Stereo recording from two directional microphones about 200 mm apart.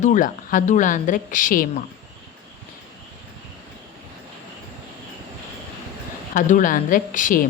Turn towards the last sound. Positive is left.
turn(degrees=40)  # may be behind; listen again after turning